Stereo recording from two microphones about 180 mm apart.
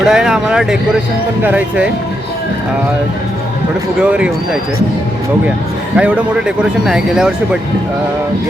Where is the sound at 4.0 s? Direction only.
5° right (ahead or behind).